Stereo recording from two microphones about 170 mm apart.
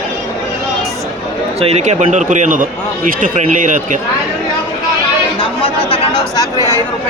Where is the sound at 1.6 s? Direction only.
35° right (ahead or behind).